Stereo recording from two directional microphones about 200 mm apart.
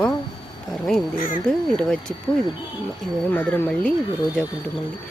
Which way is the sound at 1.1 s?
40° left (ahead or behind).